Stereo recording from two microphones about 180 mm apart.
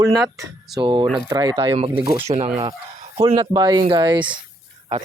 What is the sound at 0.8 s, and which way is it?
Speech, 25° right (ahead or behind).